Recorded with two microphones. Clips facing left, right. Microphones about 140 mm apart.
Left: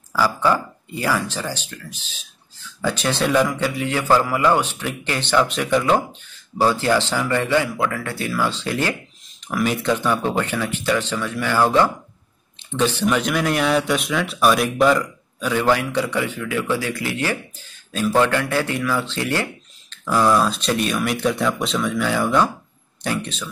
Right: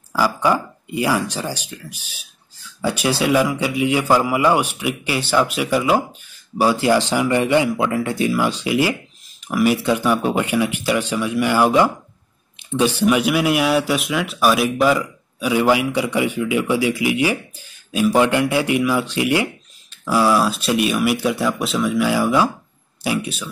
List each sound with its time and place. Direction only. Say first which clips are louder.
0.1 s speech: right 1 dB; 15° right (ahead or behind)